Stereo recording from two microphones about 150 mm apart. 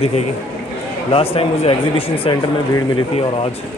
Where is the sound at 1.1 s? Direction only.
40° left (ahead or behind).